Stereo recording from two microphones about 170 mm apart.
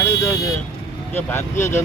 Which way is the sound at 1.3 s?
15° left (ahead or behind).